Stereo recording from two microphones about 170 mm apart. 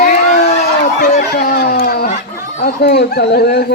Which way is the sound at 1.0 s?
60° left (ahead or behind).